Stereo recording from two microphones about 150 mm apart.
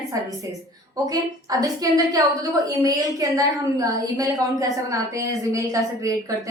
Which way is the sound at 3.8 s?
25° right (ahead or behind).